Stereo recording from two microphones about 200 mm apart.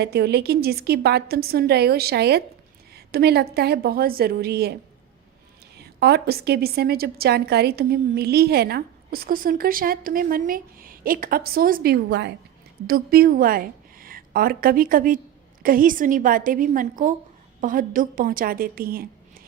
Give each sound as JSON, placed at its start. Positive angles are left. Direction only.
{"t": 0.0, "sound": "a woman's voice", "side_deg": -55}
{"t": 6.0, "sound": "a woman's voice", "side_deg": -55}